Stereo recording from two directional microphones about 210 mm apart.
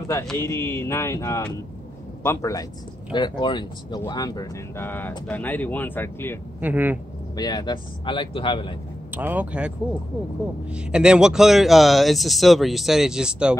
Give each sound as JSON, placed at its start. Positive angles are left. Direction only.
{"t": 0.3, "sound": "speech", "side_deg": 10}
{"t": 6.6, "sound": "speech", "side_deg": -10}
{"t": 7.3, "sound": "speech", "side_deg": 20}
{"t": 9.1, "sound": "speech", "side_deg": -10}